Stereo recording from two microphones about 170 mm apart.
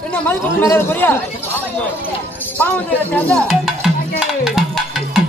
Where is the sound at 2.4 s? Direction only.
10° left (ahead or behind).